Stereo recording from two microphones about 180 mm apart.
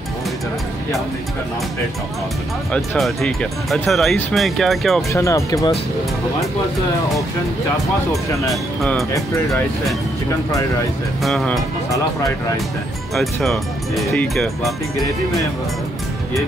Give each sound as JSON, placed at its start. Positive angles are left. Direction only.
{"t": 2.7, "sound": "speech", "side_deg": 5}
{"t": 5.1, "sound": "speech", "side_deg": 15}
{"t": 11.2, "sound": "speech", "side_deg": 0}
{"t": 13.1, "sound": "speech", "side_deg": 0}